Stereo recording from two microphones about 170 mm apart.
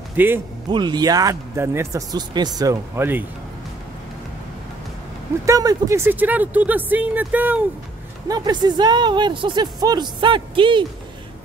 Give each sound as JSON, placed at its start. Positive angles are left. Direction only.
{"t": 0.2, "sound": "speech", "side_deg": -10}
{"t": 0.7, "sound": "speech", "side_deg": -25}
{"t": 5.4, "sound": "speech", "side_deg": -20}
{"t": 8.3, "sound": "speech", "side_deg": -25}